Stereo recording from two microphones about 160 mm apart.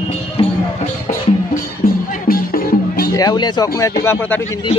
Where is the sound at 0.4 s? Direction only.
30° left (ahead or behind).